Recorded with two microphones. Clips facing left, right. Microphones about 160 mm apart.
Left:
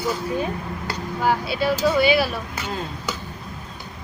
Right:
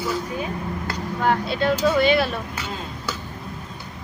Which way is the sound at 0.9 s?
5° left (ahead or behind).